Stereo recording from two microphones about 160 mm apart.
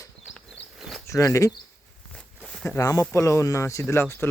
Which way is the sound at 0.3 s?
Centre (ahead or behind).